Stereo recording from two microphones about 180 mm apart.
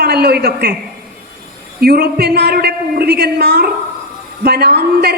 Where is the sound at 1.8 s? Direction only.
60° right (ahead or behind).